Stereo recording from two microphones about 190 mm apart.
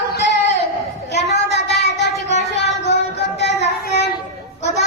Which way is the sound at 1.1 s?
65° left (ahead or behind).